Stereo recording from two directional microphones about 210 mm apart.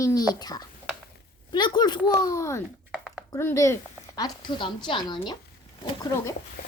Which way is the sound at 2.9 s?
Centre (ahead or behind).